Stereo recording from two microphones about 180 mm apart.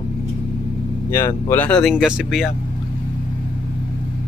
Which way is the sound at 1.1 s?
15° left (ahead or behind).